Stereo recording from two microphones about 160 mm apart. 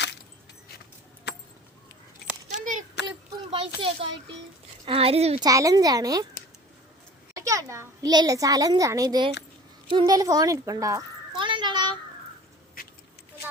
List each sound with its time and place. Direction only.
2.5 s a sound: 50° right (ahead or behind)
3.8 s speech: 35° right (ahead or behind)
5.4 s a child's voice: 20° right (ahead or behind)
7.3 s a child's voice: 20° right (ahead or behind)
11.3 s a sound: 30° right (ahead or behind)
12.8 s vehicle: 65° left (ahead or behind)